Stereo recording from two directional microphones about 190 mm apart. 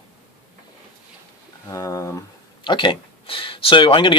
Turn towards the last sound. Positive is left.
turn(degrees=25)  # may be behind; listen again after turning